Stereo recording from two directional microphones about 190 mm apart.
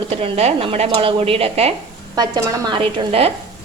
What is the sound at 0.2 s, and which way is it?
Speech, 30° right (ahead or behind).